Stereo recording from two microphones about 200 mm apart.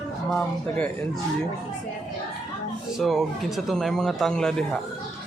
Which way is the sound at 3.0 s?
Centre (ahead or behind).